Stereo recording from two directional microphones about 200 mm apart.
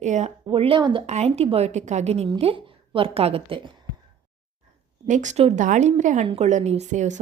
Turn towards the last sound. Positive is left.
turn(degrees=-35)  # may be behind; listen again after turning